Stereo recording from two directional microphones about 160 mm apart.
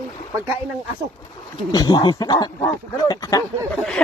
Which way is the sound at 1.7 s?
25° left (ahead or behind).